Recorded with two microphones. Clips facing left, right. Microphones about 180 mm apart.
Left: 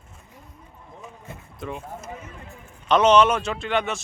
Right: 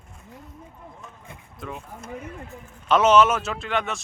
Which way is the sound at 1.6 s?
Centre (ahead or behind).